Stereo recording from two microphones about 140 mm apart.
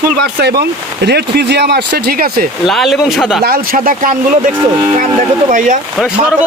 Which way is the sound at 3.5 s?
90° right.